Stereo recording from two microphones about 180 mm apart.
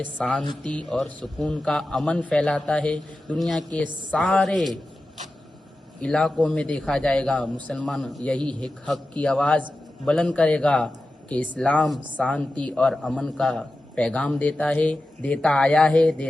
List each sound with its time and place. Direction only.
0.0 s a man's voice: 5° left (ahead or behind)
6.0 s a man's voice: 5° left (ahead or behind)